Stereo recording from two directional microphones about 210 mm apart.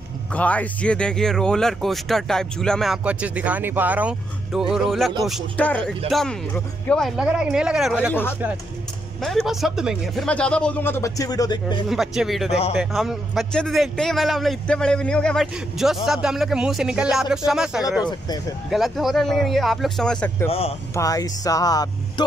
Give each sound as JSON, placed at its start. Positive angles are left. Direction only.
{"t": 0.3, "sound": "speech", "side_deg": 5}
{"t": 8.1, "sound": "speech", "side_deg": 10}
{"t": 11.9, "sound": "speech", "side_deg": 0}
{"t": 12.4, "sound": "speech", "side_deg": 30}
{"t": 12.7, "sound": "speech", "side_deg": 0}
{"t": 20.4, "sound": "speech", "side_deg": 30}
{"t": 20.9, "sound": "speech", "side_deg": 15}